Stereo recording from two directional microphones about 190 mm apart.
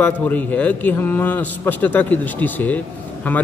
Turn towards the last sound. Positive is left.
turn(degrees=10)  # may be behind; listen again after turning